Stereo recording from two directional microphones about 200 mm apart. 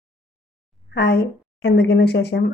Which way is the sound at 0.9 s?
55° left (ahead or behind).